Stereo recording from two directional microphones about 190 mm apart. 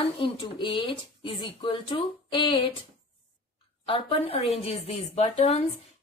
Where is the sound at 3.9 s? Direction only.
30° left (ahead or behind).